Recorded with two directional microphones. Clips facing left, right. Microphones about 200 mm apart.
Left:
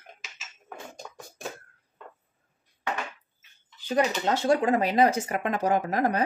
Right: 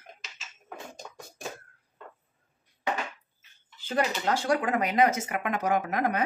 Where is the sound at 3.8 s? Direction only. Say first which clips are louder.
Left 3 dB; 20° left (ahead or behind).